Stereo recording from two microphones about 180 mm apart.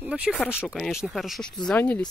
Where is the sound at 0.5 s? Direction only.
5° left (ahead or behind).